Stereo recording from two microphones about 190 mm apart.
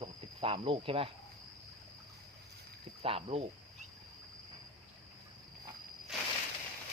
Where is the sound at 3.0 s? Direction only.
30° right (ahead or behind).